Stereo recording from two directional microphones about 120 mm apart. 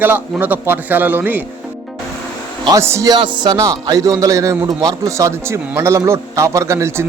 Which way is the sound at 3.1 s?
40° right (ahead or behind).